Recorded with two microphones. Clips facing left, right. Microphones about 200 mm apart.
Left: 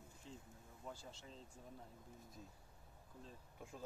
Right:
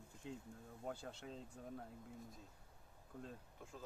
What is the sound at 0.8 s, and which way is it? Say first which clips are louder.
Speech: right 5 dB; 60° right (ahead or behind).